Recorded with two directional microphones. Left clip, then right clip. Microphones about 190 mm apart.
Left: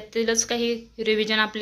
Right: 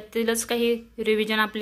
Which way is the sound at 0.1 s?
25° right (ahead or behind).